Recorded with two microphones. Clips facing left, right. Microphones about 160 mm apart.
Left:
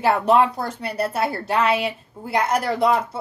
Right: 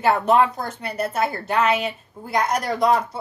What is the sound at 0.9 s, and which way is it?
A woman's voice, 35° left (ahead or behind).